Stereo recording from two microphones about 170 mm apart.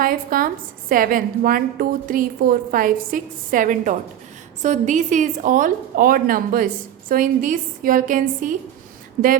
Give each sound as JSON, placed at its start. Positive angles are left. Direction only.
{"t": 0.0, "sound": "a woman's voice", "side_deg": -55}